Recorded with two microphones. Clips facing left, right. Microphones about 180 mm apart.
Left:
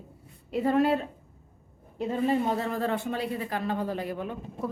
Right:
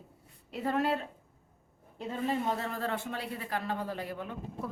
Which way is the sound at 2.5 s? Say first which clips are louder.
Left 5 dB; 15° left (ahead or behind).